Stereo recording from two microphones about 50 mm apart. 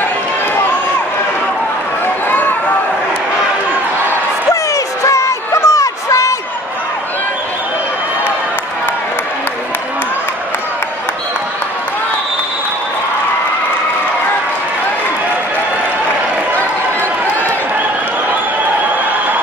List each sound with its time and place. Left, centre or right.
5.0 s music: left